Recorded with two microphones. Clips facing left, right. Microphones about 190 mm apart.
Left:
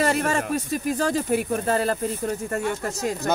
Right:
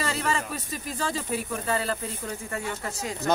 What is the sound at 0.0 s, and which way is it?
Speech, 50° left (ahead or behind).